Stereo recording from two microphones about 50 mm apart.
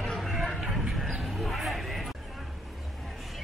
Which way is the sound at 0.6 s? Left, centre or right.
Centre.